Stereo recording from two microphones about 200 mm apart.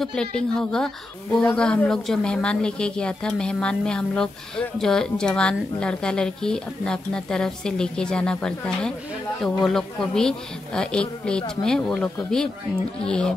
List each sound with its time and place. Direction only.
0.0 s a woman's voice: 5° left (ahead or behind)